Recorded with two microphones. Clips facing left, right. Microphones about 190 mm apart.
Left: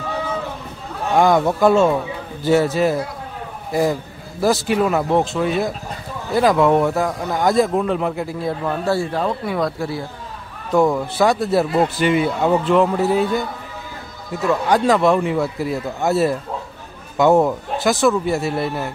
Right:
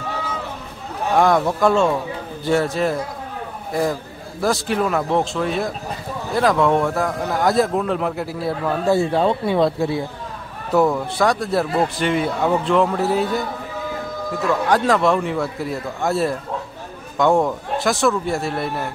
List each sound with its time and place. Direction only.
1.1 s speech: centre (ahead or behind)
4.4 s speech: 5° left (ahead or behind)
8.9 s speech: 25° right (ahead or behind)
10.7 s speech: centre (ahead or behind)